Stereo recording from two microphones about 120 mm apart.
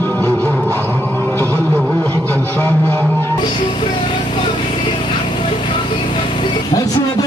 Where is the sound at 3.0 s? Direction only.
15° left (ahead or behind).